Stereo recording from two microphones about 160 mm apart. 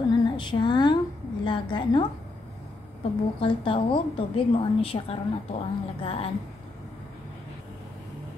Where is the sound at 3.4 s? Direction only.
35° left (ahead or behind).